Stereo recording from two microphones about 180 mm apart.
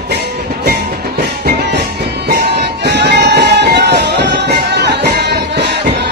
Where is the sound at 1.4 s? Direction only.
65° right (ahead or behind).